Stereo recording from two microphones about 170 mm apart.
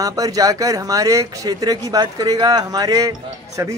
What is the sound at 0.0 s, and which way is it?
Speech, 20° right (ahead or behind).